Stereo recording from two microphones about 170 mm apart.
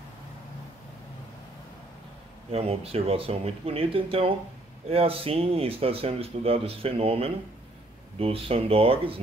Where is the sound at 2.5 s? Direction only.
35° right (ahead or behind).